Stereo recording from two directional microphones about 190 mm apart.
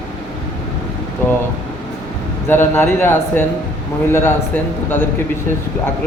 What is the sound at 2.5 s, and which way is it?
A man's voice, 10° left (ahead or behind).